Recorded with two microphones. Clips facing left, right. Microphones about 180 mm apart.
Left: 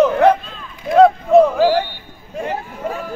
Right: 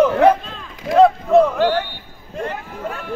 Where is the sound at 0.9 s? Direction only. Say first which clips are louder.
Left 2 dB; centre (ahead or behind).